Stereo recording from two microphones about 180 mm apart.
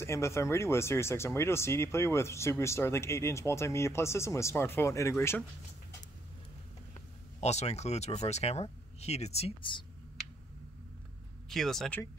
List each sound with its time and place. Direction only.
0.0 s speech: 15° left (ahead or behind)
7.3 s speech: 40° left (ahead or behind)
11.4 s speech: centre (ahead or behind)